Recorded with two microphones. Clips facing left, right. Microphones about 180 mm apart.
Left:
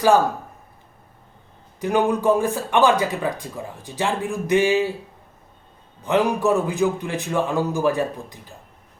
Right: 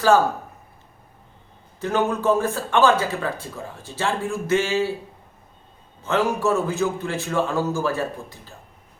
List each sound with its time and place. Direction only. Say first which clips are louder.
1.8 s a man's voice: left 2 dB; 15° left (ahead or behind)
6.0 s a man's voice: left 2 dB; 15° left (ahead or behind)